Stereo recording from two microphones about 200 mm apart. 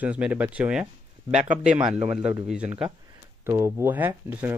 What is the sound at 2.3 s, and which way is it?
Speech, 5° right (ahead or behind).